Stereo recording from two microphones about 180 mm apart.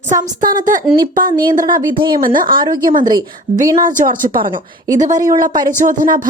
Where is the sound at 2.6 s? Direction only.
20° right (ahead or behind).